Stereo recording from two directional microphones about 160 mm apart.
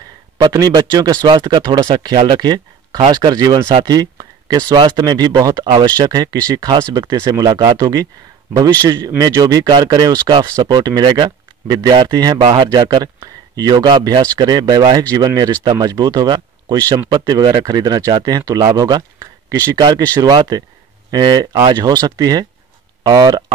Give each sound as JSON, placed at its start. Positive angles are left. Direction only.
{"t": 0.4, "sound": "speech", "side_deg": -20}
{"t": 21.1, "sound": "speech", "side_deg": -25}